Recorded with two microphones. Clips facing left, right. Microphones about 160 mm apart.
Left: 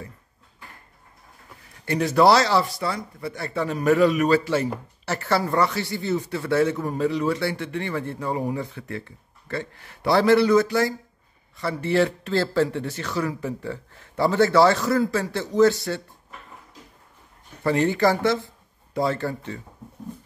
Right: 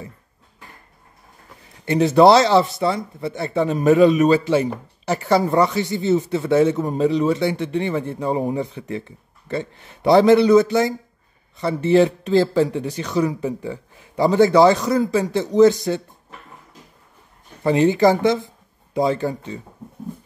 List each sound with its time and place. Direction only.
1.9 s speech: 20° right (ahead or behind)
17.6 s speech: 15° right (ahead or behind)